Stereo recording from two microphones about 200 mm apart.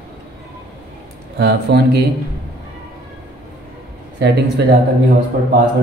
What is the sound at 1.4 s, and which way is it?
Speech, 55° right (ahead or behind).